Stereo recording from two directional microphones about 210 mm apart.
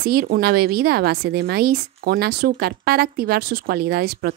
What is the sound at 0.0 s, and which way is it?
Speech, 45° right (ahead or behind).